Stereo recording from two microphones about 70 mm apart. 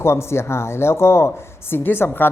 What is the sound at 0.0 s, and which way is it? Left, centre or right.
Speech, left.